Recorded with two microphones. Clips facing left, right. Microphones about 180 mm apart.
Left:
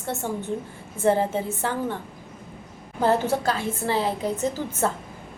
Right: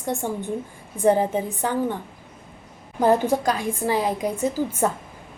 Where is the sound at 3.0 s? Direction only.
15° right (ahead or behind).